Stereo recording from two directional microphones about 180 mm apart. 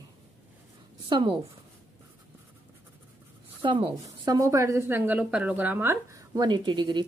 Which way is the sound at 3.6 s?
25° right (ahead or behind).